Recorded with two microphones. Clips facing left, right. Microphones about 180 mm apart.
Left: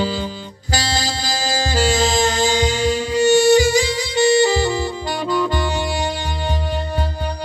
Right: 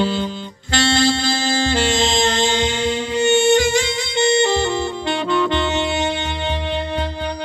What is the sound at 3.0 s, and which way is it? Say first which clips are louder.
Music: left 2 dB; 40° left (ahead or behind).